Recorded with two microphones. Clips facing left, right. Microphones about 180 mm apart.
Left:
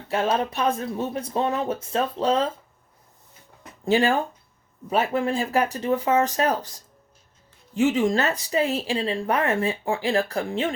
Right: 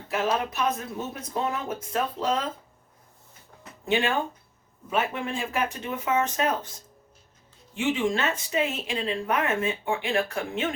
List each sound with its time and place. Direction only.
0.1 s speech: 30° left (ahead or behind)
3.8 s speech: 35° left (ahead or behind)
7.8 s speech: 40° left (ahead or behind)